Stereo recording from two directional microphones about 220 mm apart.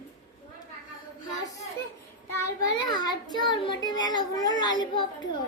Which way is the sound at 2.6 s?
20° left (ahead or behind).